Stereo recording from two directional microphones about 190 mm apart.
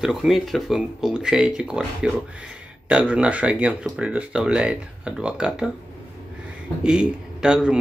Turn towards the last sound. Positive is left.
turn(degrees=-5)  # may be behind; listen again after turning